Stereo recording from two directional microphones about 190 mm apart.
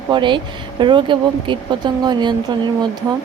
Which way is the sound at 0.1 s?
25° right (ahead or behind).